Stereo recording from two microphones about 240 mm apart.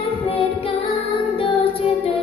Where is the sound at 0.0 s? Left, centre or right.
Left.